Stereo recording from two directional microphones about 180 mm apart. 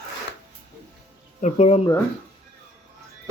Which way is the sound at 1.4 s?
35° left (ahead or behind).